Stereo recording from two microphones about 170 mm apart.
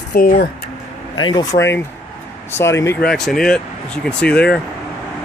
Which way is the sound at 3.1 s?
5° left (ahead or behind).